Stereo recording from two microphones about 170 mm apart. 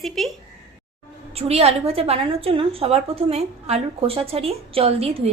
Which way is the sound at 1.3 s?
35° right (ahead or behind).